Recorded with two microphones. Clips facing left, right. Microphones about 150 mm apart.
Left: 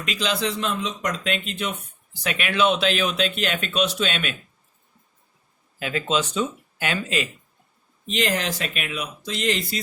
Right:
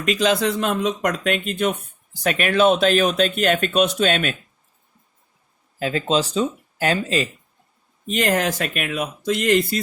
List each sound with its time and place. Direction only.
0.0 s speech: 45° right (ahead or behind)
5.8 s speech: 35° right (ahead or behind)
8.0 s speech: 50° right (ahead or behind)